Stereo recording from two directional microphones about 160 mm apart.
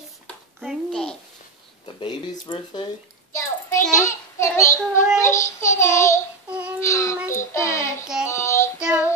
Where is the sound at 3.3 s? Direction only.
20° left (ahead or behind).